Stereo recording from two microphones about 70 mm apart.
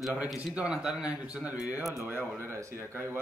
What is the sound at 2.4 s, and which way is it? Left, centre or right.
Speech, right.